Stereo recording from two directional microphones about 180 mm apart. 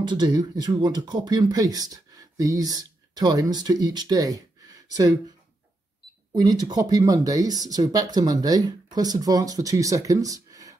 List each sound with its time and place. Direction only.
0.0 s speech: 25° right (ahead or behind)
6.3 s speech: 20° right (ahead or behind)